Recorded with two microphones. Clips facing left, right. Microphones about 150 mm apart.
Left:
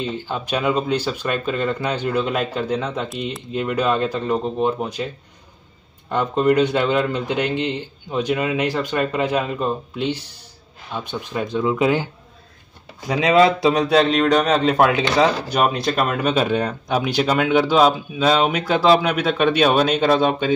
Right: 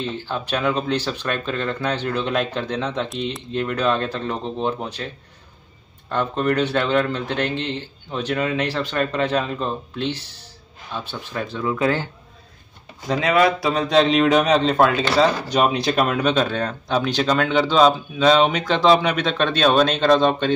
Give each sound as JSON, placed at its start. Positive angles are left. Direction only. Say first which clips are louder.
{"t": 0.0, "sound": "speech", "louder": "left 1 dB", "side_deg": 15}
{"t": 13.1, "sound": "speech", "louder": "left 3 dB", "side_deg": 20}
{"t": 13.9, "sound": "speech", "louder": "right 4 dB", "side_deg": 0}